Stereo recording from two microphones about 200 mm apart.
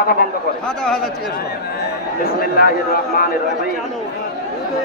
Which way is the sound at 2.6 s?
50° left (ahead or behind).